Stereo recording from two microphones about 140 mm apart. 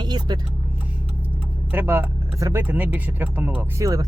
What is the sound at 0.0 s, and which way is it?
Vehicle, 30° right (ahead or behind).